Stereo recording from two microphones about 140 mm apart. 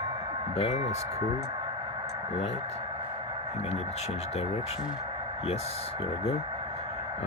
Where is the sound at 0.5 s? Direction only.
50° left (ahead or behind).